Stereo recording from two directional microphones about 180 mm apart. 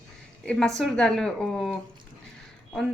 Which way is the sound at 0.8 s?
5° left (ahead or behind).